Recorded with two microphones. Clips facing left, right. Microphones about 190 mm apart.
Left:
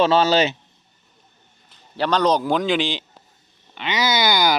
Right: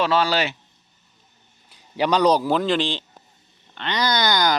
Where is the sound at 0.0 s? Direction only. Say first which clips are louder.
Left 4 dB; 25° left (ahead or behind).